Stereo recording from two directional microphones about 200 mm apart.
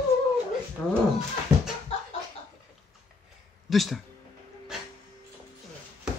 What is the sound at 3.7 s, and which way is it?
Speech, centre (ahead or behind).